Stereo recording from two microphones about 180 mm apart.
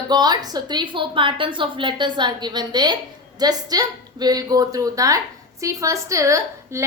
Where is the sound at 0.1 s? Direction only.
25° right (ahead or behind).